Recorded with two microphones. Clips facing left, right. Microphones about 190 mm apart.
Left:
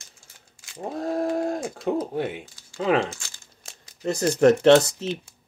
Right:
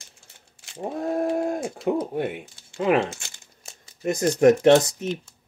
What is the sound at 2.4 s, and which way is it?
Speech, 25° right (ahead or behind).